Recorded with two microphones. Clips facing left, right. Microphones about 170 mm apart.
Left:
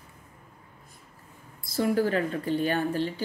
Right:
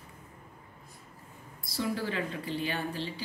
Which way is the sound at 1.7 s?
45° left (ahead or behind).